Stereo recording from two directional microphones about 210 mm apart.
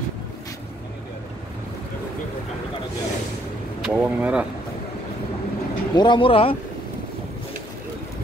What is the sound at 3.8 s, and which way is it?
Speech, 5° right (ahead or behind).